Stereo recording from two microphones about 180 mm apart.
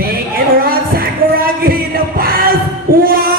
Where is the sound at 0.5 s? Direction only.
55° right (ahead or behind).